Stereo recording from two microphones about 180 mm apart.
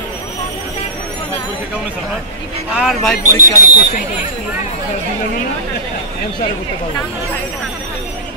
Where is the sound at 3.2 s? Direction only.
20° left (ahead or behind).